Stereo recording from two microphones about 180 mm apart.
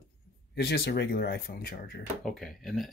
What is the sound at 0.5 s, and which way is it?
Speech, 65° left (ahead or behind).